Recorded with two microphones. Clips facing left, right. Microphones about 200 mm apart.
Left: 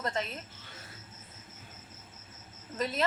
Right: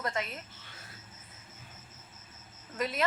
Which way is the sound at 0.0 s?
30° left (ahead or behind).